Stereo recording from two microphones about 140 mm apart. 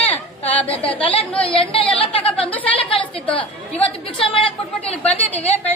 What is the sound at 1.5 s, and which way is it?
Speech, 40° left (ahead or behind).